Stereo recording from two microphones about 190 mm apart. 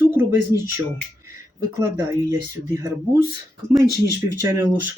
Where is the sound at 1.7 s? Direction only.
15° right (ahead or behind).